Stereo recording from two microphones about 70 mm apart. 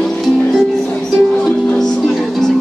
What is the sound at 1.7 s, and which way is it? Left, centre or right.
Music, centre.